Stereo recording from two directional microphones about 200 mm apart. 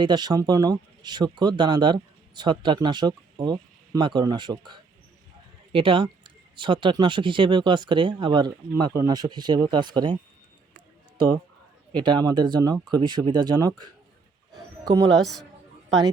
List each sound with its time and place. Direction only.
0.0 s speech: 20° right (ahead or behind)
11.9 s speech: 20° right (ahead or behind)
15.2 s a man's voice: centre (ahead or behind)